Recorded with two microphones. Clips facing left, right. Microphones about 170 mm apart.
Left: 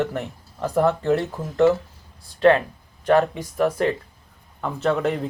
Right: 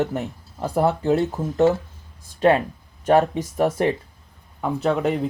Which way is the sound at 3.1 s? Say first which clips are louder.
Right 1 dB; 20° right (ahead or behind).